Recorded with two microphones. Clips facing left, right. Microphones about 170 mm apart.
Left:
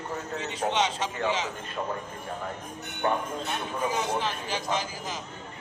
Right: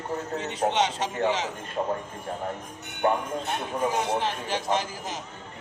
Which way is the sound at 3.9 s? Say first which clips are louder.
Right 1 dB; 60° right (ahead or behind).